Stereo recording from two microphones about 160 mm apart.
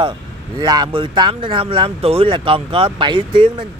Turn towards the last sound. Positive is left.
turn(degrees=-35)  # may be behind; listen again after turning